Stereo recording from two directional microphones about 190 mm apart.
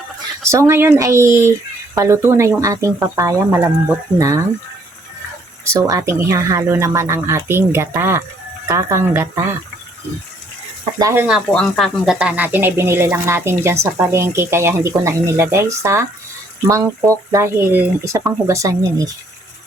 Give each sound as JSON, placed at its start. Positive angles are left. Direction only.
{"t": 0.4, "sound": "speech", "side_deg": -15}
{"t": 5.6, "sound": "speech", "side_deg": -15}
{"t": 11.0, "sound": "speech", "side_deg": -10}